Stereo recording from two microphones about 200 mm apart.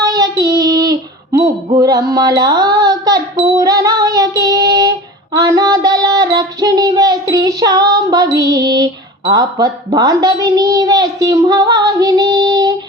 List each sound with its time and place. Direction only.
0.0 s child singing: 15° right (ahead or behind)